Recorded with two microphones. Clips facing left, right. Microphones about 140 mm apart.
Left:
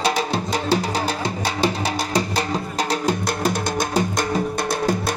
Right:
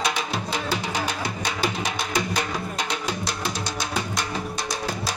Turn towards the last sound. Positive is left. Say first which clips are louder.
# left 7 dB
turn(degrees=45)  # may be behind; listen again after turning